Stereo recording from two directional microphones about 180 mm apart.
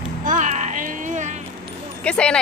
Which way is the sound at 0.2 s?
45° right (ahead or behind).